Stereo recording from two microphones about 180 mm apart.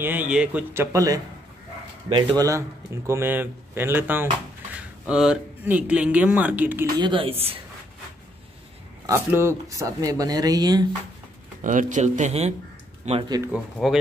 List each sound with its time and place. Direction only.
0.0 s speech: 10° right (ahead or behind)
7.0 s speech: 30° right (ahead or behind)
9.0 s speech: 15° right (ahead or behind)
11.6 s speech: 45° right (ahead or behind)
13.8 s speech: 5° right (ahead or behind)